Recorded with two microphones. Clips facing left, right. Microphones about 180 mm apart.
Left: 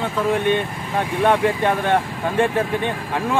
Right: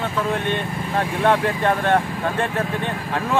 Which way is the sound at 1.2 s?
10° left (ahead or behind).